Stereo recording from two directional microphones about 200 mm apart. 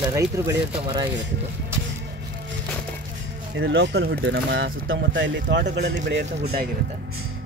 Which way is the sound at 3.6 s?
65° right (ahead or behind).